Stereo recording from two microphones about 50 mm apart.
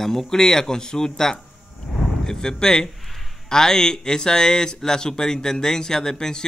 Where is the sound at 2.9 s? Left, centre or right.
Centre.